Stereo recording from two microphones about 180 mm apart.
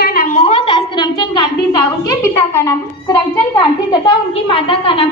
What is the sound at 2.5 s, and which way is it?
A child's voice, 20° left (ahead or behind).